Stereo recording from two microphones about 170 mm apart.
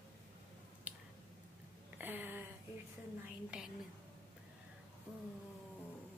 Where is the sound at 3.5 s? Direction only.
5° right (ahead or behind).